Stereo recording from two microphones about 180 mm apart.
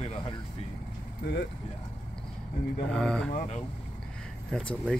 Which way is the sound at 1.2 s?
70° left (ahead or behind).